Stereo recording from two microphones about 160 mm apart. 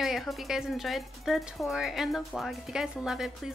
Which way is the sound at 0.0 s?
Centre (ahead or behind).